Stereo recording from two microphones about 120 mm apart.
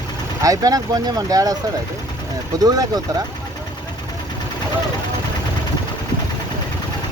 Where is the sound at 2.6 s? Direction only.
35° right (ahead or behind).